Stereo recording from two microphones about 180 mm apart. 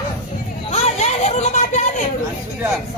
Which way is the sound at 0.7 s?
35° left (ahead or behind).